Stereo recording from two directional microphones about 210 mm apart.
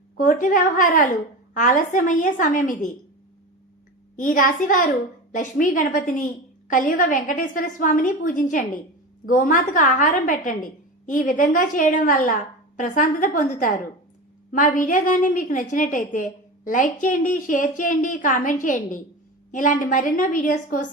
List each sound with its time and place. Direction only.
0.2 s a woman's voice: 40° left (ahead or behind)
4.2 s a woman's voice: 40° left (ahead or behind)